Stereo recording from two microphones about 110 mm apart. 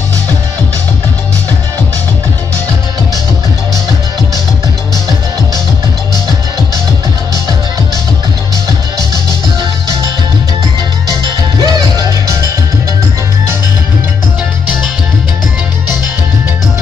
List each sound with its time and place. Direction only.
11.6 s music: 35° right (ahead or behind)